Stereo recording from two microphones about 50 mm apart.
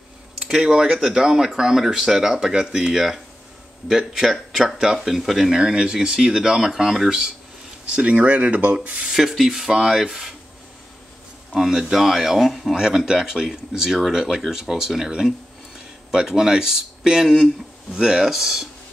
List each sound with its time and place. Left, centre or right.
0.5 s speech: centre
7.9 s speech: right
9.1 s speech: centre
11.5 s speech: centre
12.7 s speech: centre